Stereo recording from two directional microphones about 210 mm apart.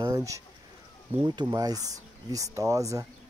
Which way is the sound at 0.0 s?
15° right (ahead or behind).